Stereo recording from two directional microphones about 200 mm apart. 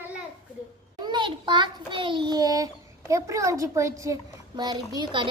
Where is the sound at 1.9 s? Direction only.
25° right (ahead or behind).